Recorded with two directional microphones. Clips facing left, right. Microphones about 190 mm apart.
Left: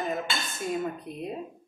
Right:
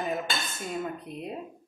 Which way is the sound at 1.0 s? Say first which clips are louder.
Left 2 dB; centre (ahead or behind).